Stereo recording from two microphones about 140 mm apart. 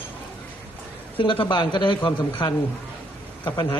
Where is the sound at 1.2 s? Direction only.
35° left (ahead or behind).